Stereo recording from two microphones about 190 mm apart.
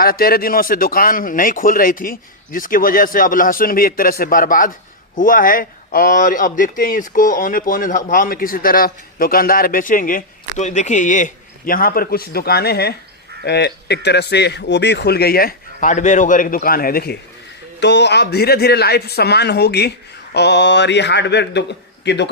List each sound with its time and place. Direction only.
0.0 s a man's voice: 50° left (ahead or behind)
17.7 s a man's voice: 65° left (ahead or behind)